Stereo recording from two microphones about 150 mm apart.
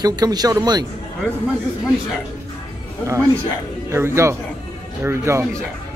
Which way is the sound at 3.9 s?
15° right (ahead or behind).